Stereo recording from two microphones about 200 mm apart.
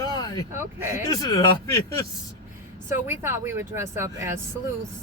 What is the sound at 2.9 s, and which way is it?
Speech, 10° right (ahead or behind).